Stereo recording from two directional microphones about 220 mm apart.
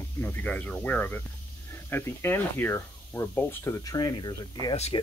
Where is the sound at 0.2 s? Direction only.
10° left (ahead or behind).